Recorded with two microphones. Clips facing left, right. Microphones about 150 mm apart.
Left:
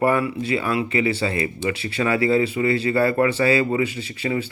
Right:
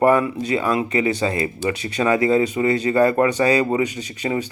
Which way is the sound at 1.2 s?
40° right (ahead or behind).